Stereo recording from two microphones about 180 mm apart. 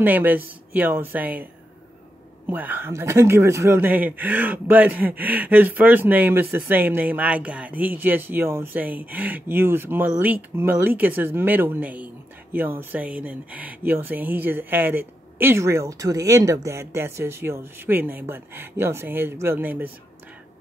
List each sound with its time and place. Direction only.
0.0 s speech: 10° right (ahead or behind)
2.5 s speech: 10° right (ahead or behind)